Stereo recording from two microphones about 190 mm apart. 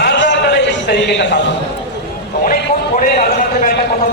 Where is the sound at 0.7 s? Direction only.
65° left (ahead or behind).